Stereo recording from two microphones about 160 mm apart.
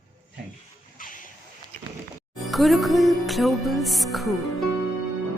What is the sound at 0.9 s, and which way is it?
Hiss, 60° left (ahead or behind).